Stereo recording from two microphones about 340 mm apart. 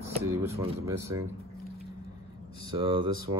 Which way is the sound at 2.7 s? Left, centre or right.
Centre.